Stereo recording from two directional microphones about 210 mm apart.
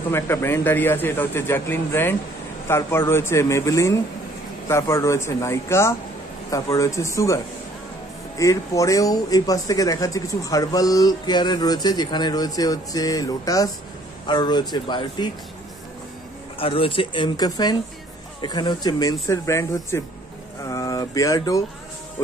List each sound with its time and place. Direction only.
0.1 s speech: 10° left (ahead or behind)
8.4 s speech: 15° left (ahead or behind)
16.5 s speech: 25° left (ahead or behind)